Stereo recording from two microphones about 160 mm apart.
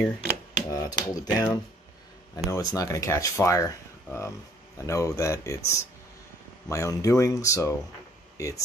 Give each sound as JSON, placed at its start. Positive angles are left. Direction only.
{"t": 0.6, "sound": "finger snapping", "side_deg": 25}
{"t": 2.5, "sound": "speech", "side_deg": 20}